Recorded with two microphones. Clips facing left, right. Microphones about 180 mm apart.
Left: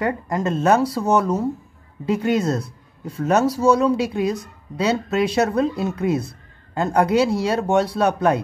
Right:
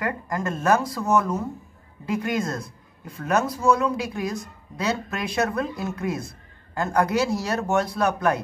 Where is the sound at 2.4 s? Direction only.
70° left (ahead or behind).